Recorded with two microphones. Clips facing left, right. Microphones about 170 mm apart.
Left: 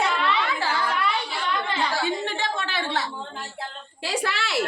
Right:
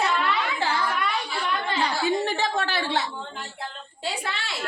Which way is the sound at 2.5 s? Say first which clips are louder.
Right 3 dB; 40° right (ahead or behind).